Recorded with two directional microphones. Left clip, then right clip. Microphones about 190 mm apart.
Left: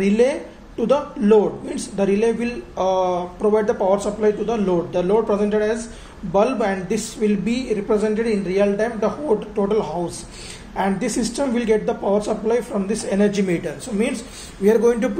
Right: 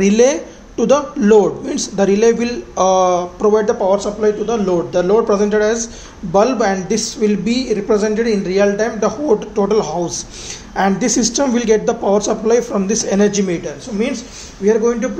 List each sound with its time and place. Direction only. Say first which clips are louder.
0.0 s a man's voice: right 5 dB; 30° right (ahead or behind)
3.8 s speech: right 4 dB; centre (ahead or behind)
4.6 s a man's voice: right 5 dB; 20° right (ahead or behind)
13.5 s speech: right 2 dB; 5° left (ahead or behind)
14.6 s speech: right 2 dB; 20° left (ahead or behind)